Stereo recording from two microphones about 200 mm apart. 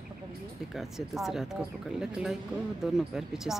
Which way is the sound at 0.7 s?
Centre (ahead or behind).